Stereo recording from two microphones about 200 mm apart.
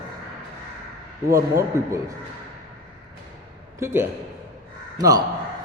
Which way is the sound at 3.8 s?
10° right (ahead or behind).